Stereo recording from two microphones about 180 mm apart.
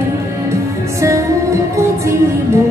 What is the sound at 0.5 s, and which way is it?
Music, 15° right (ahead or behind).